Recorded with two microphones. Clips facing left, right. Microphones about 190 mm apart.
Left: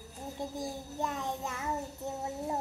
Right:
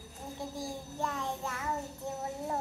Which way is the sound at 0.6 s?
20° left (ahead or behind).